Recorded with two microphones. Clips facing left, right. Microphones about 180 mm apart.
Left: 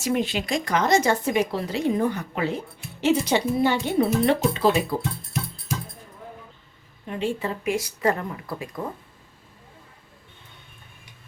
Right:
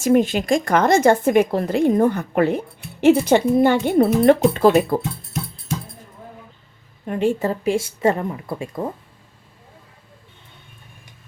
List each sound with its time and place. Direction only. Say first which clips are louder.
0.0 s speech: right 8 dB; 50° right (ahead or behind)
7.0 s speech: right 7 dB; 50° right (ahead or behind)
7.7 s a woman's voice: right 4 dB; 25° right (ahead or behind)